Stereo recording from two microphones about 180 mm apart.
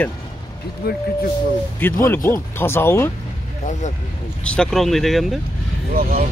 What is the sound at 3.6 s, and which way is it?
Speech, 40° left (ahead or behind).